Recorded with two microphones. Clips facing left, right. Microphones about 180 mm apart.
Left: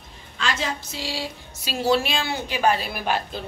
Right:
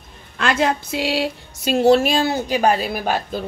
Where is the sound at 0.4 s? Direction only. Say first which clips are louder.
Right 8 dB; 55° right (ahead or behind).